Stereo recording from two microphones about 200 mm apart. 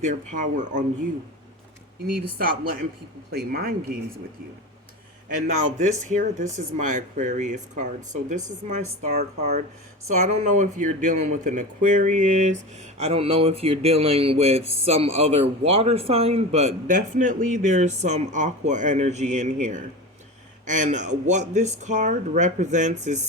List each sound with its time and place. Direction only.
0.0 s speech: 40° right (ahead or behind)
2.1 s speech: 45° right (ahead or behind)
5.3 s speech: 40° right (ahead or behind)